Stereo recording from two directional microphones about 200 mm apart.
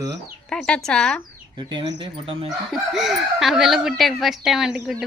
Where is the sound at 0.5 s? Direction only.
5° left (ahead or behind).